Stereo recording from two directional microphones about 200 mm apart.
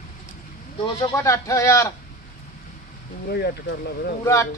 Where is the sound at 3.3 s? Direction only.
50° left (ahead or behind).